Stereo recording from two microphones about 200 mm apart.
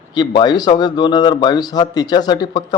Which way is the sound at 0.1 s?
20° left (ahead or behind).